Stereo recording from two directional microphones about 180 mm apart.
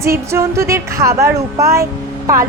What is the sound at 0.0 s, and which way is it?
A woman's voice, 15° right (ahead or behind).